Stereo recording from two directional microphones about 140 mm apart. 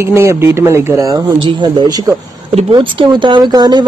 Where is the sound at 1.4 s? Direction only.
35° right (ahead or behind).